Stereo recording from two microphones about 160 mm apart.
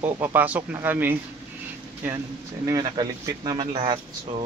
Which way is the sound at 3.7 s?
45° right (ahead or behind).